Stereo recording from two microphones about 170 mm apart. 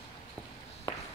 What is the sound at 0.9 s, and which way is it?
Walk, 25° left (ahead or behind).